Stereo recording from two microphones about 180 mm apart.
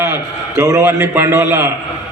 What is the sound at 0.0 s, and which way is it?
A man's voice, 15° right (ahead or behind).